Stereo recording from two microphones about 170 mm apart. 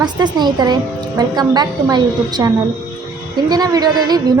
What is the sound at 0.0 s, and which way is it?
A woman's voice, 25° right (ahead or behind).